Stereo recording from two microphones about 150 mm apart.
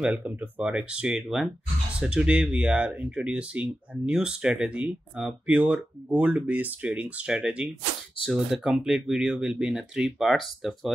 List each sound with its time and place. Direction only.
0.0 s speech: 10° right (ahead or behind)